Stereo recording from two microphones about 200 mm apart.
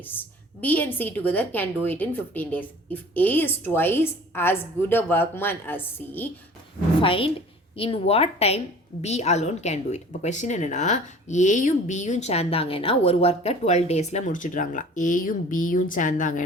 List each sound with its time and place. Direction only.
0.0 s a woman's voice: 10° left (ahead or behind)
7.0 s a woman's voice: 25° left (ahead or behind)